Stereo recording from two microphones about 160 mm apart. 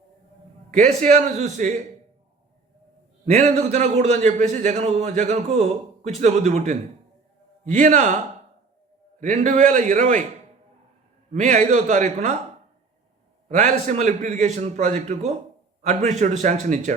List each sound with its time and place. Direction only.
0.7 s a man's voice: 45° right (ahead or behind)
3.2 s a man's voice: 45° right (ahead or behind)
9.2 s a man's voice: 50° right (ahead or behind)
11.3 s a man's voice: 50° right (ahead or behind)
13.5 s a man's voice: 45° right (ahead or behind)